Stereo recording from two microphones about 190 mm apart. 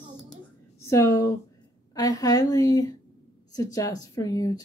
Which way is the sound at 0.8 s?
15° left (ahead or behind).